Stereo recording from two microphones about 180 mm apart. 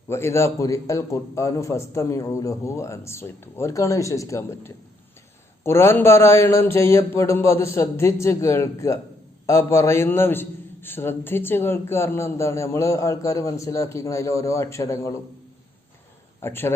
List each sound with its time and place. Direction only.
0.1 s a man's voice: 15° left (ahead or behind)
16.4 s a man's voice: 15° left (ahead or behind)